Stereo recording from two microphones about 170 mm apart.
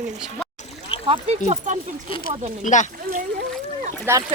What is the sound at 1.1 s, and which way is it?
Speech, 35° right (ahead or behind).